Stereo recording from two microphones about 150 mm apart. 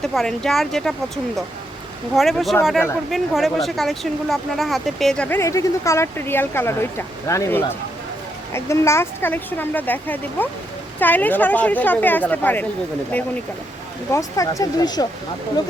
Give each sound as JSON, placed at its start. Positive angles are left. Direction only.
{"t": 0.0, "sound": "speech", "side_deg": 0}
{"t": 5.4, "sound": "speech", "side_deg": 20}
{"t": 14.1, "sound": "speech", "side_deg": 20}